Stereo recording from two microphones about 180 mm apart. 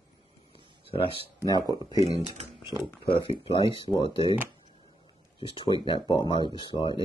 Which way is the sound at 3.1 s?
30° left (ahead or behind).